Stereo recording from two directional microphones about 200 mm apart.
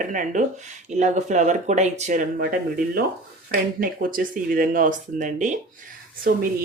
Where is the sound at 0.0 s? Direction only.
40° right (ahead or behind).